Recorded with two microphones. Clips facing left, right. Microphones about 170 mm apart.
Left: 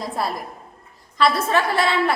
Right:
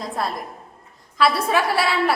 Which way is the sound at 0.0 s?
Centre (ahead or behind).